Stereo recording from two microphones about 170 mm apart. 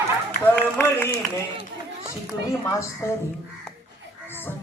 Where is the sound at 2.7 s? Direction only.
15° left (ahead or behind).